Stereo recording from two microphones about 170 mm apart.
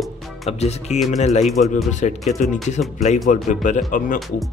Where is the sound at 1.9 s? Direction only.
45° left (ahead or behind).